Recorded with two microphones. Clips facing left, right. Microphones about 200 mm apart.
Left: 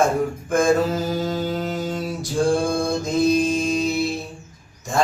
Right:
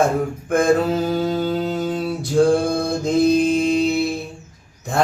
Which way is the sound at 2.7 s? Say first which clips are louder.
Right 2 dB; 60° right (ahead or behind).